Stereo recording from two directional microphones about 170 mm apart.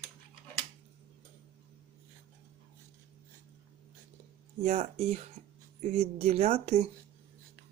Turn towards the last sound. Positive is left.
turn(degrees=-40)  # may be behind; listen again after turning